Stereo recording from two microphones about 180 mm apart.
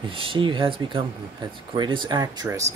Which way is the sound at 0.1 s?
30° right (ahead or behind).